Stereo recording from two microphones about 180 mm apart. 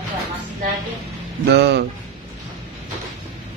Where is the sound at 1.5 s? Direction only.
70° right (ahead or behind).